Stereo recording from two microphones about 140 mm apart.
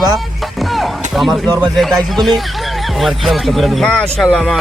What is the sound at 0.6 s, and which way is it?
Music, centre (ahead or behind).